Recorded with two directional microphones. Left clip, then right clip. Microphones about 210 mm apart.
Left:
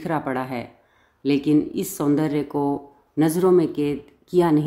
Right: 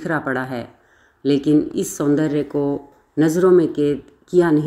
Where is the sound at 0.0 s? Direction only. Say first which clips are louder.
Right 3 dB; centre (ahead or behind).